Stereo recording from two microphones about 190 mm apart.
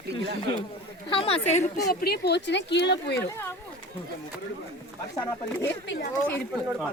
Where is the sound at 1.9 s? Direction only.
55° left (ahead or behind).